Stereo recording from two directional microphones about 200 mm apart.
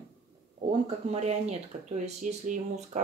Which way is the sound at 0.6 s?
30° right (ahead or behind).